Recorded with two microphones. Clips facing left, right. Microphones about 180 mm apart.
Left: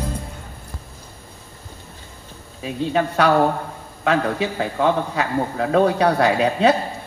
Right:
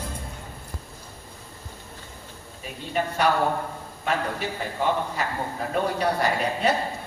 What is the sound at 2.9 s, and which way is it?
A man's voice, 85° left.